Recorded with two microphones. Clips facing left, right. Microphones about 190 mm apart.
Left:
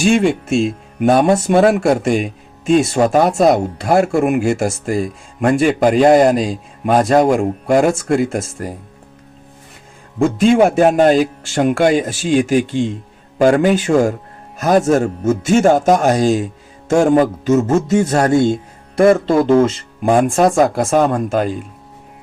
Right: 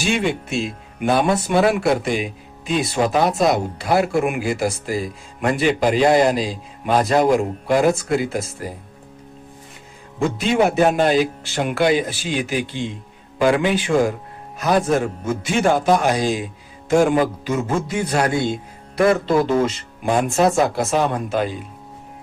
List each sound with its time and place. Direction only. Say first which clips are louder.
0.0 s a man's voice: left 7 dB; 50° left (ahead or behind)
10.2 s a man's voice: left 6 dB; 50° left (ahead or behind)